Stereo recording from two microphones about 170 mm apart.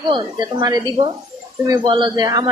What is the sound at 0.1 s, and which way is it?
A man's voice, 25° right (ahead or behind).